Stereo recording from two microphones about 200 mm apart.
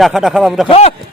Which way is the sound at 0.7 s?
30° left (ahead or behind).